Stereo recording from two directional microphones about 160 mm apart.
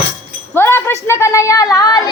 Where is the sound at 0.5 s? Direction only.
15° left (ahead or behind).